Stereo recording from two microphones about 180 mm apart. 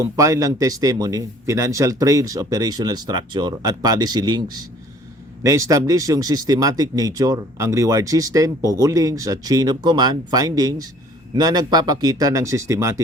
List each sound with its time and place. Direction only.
0.0 s speech: 20° right (ahead or behind)